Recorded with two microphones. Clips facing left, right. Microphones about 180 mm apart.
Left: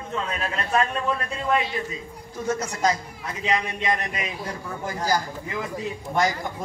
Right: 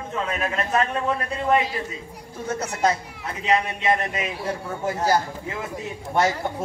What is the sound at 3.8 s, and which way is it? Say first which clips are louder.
A man's voice: right 3 dB; 25° right (ahead or behind).